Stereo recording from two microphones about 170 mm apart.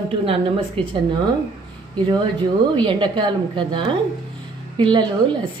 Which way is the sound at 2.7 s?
25° right (ahead or behind).